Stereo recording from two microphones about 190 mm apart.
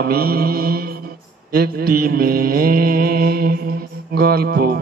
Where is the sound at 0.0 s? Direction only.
50° right (ahead or behind).